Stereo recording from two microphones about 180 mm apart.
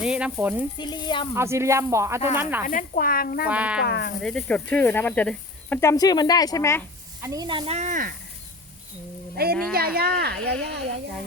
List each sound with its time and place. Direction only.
0.0 s speech: 5° right (ahead or behind)
0.8 s speech: 25° left (ahead or behind)
1.4 s speech: 15° right (ahead or behind)
2.6 s speech: 50° left (ahead or behind)
3.4 s speech: 5° right (ahead or behind)
3.8 s speech: 65° left (ahead or behind)
4.2 s speech: 5° left (ahead or behind)
7.2 s speech: 20° right (ahead or behind)
7.8 s speech: 45° right (ahead or behind)
9.4 s speech: 60° right (ahead or behind)